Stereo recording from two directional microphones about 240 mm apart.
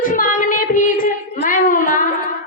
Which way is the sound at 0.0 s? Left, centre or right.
Left.